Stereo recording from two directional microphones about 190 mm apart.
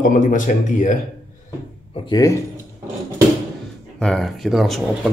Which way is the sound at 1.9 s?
20° left (ahead or behind).